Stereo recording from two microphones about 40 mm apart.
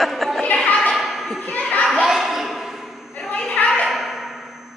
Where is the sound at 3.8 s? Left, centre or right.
Centre.